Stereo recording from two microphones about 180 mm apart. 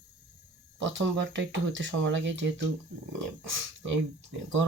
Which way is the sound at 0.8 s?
90° right.